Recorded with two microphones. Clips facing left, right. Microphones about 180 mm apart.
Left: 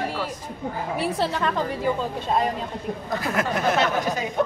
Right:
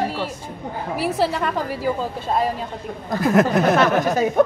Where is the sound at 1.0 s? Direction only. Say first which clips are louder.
Right 4 dB; 5° right (ahead or behind).